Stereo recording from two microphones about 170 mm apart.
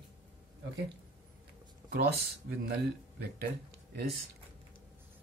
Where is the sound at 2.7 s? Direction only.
70° right (ahead or behind).